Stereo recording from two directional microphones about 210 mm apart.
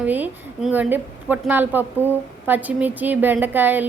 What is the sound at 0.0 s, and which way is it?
A woman's voice, 5° right (ahead or behind).